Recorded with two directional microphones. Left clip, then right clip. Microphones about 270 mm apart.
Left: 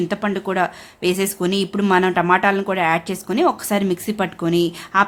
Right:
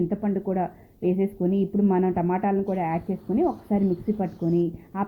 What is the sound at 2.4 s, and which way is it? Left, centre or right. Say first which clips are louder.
Speech: left 7 dB; left.